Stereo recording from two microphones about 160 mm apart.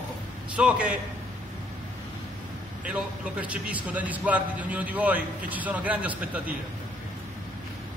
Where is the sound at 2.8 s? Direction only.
10° right (ahead or behind).